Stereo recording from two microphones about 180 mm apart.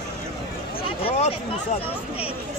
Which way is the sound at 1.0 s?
35° left (ahead or behind).